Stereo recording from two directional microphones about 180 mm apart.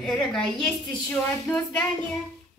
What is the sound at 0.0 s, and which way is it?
A woman's voice, 5° left (ahead or behind).